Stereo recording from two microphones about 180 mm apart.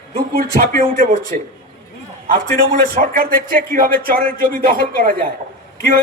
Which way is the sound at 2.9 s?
55° right (ahead or behind).